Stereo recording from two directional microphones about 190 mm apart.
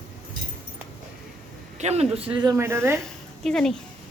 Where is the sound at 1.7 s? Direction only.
35° right (ahead or behind).